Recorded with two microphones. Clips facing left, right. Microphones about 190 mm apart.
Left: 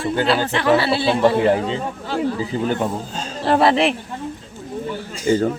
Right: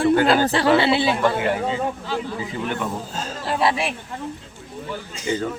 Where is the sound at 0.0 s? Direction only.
50° right (ahead or behind).